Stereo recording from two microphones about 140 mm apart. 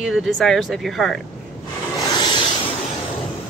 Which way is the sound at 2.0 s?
30° left (ahead or behind).